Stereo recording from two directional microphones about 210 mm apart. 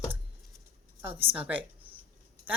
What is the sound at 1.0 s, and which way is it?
Speech, 10° right (ahead or behind).